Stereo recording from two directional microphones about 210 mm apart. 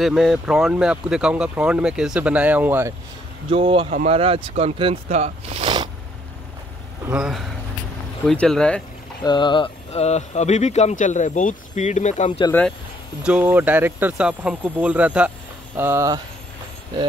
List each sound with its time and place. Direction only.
0.0 s speech: centre (ahead or behind)
3.4 s speech: 25° right (ahead or behind)
7.1 s speech: 5° right (ahead or behind)
9.2 s speech: 20° left (ahead or behind)
12.3 s speech: 25° left (ahead or behind)
13.2 s speech: 5° right (ahead or behind)